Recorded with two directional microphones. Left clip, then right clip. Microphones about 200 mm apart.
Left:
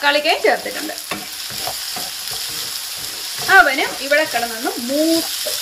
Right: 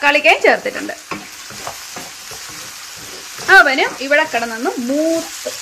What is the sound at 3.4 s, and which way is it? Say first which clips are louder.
Speech: right 3 dB; 50° right (ahead or behind).